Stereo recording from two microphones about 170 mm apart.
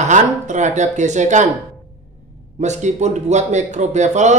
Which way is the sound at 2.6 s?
45° right (ahead or behind).